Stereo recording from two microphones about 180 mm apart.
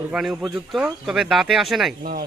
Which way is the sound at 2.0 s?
55° right (ahead or behind).